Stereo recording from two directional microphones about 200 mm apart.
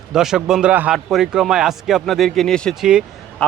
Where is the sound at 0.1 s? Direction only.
Centre (ahead or behind).